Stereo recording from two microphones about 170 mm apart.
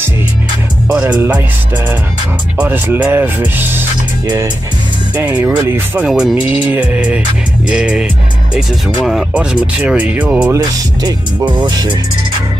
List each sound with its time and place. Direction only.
1.0 s speech: 10° right (ahead or behind)
2.5 s speech: 10° right (ahead or behind)
5.1 s speech: 10° right (ahead or behind)
6.0 s speech: 5° right (ahead or behind)
10.5 s speech: 20° right (ahead or behind)